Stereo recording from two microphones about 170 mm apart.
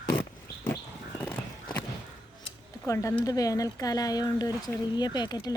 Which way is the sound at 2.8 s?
15° left (ahead or behind).